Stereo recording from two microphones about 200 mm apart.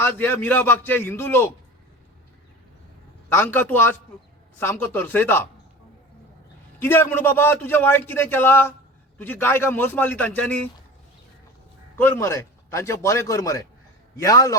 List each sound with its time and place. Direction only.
0.0 s speech: 10° left (ahead or behind)
3.3 s speech: 10° left (ahead or behind)
6.8 s speech: 10° left (ahead or behind)
11.9 s speech: 10° left (ahead or behind)